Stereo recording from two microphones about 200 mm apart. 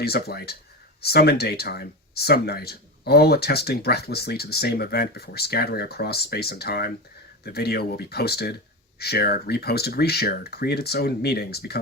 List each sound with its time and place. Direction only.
0.0 s speech: 50° left (ahead or behind)